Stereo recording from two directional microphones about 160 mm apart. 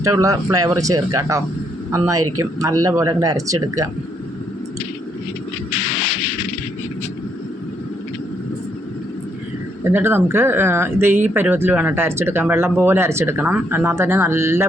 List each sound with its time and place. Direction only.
0.0 s speech: 20° right (ahead or behind)
9.8 s speech: 15° right (ahead or behind)